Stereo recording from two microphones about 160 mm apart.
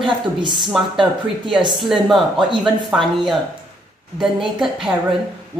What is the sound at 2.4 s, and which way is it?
Speech, 30° right (ahead or behind).